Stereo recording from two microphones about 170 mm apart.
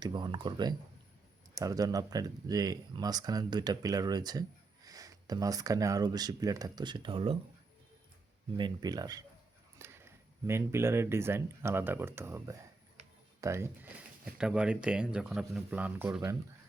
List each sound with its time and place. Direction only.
0.0 s speech: 25° right (ahead or behind)
8.5 s speech: 25° right (ahead or behind)
14.3 s speech: 5° right (ahead or behind)